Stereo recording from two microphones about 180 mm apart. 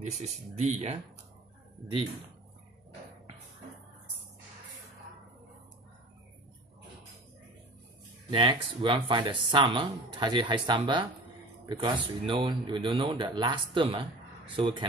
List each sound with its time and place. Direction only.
0.0 s speech: 40° right (ahead or behind)
8.3 s speech: 25° right (ahead or behind)